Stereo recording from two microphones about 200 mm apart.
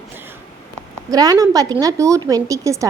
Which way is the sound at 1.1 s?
20° right (ahead or behind).